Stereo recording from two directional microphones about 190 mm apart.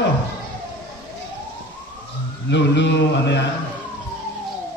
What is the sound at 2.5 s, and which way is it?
Speech, 65° left (ahead or behind).